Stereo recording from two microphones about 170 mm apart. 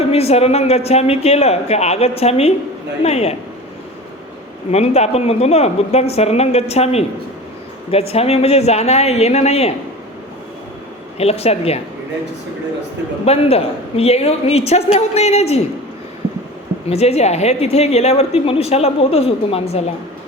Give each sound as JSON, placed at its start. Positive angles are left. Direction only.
{"t": 0.0, "sound": "a woman's voice", "side_deg": 35}
{"t": 4.7, "sound": "a woman's voice", "side_deg": 40}
{"t": 11.2, "sound": "a woman's voice", "side_deg": 35}
{"t": 13.2, "sound": "a woman's voice", "side_deg": 35}
{"t": 16.9, "sound": "a woman's voice", "side_deg": 35}